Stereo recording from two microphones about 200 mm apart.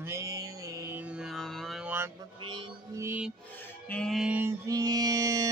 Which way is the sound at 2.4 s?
25° right (ahead or behind).